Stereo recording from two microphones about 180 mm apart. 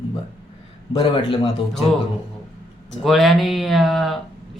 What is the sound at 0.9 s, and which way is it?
Speech, 30° left (ahead or behind).